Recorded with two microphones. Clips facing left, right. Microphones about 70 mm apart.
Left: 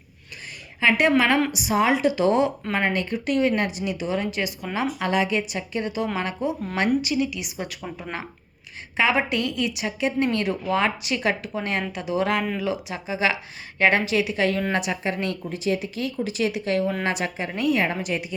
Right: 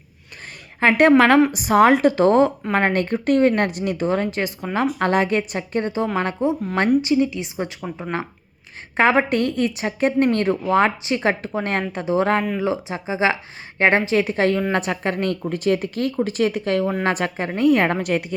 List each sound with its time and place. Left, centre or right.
0.8 s a woman's voice: right
9.0 s a woman's voice: right